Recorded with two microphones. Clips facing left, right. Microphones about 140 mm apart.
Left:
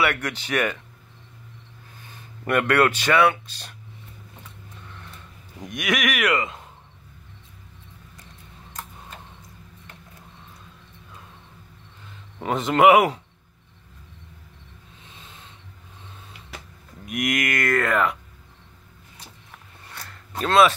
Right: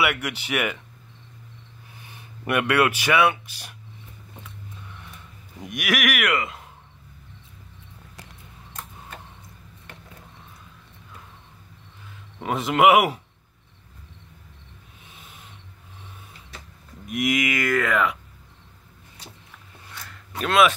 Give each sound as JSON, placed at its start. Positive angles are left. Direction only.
{"t": 0.0, "sound": "speech", "side_deg": -10}
{"t": 2.0, "sound": "speech", "side_deg": -15}
{"t": 5.6, "sound": "speech", "side_deg": -5}
{"t": 12.4, "sound": "speech", "side_deg": -5}
{"t": 15.0, "sound": "a sound", "side_deg": -10}
{"t": 17.1, "sound": "speech", "side_deg": 0}
{"t": 20.3, "sound": "speech", "side_deg": 30}